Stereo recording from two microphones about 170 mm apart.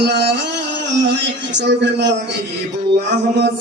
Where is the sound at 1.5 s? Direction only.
90° right.